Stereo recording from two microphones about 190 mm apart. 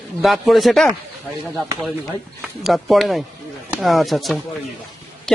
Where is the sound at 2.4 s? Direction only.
Centre (ahead or behind).